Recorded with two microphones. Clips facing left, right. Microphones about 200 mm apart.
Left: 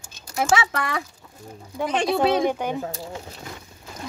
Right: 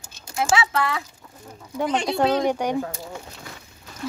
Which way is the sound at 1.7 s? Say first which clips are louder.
Even; 10° left (ahead or behind).